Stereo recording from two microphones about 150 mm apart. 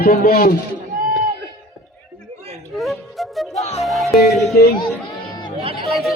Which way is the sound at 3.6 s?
45° left (ahead or behind).